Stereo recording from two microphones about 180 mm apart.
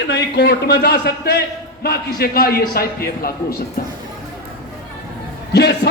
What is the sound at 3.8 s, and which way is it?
Music, 55° left (ahead or behind).